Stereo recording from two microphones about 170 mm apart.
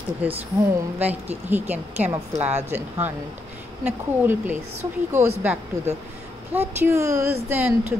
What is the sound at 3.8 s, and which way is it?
Speech, 10° right (ahead or behind).